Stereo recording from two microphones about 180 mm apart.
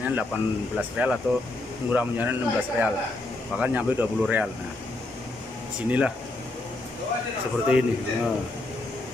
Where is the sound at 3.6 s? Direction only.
10° right (ahead or behind).